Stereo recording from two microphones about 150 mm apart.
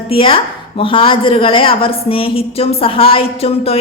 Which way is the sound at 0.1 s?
35° left (ahead or behind).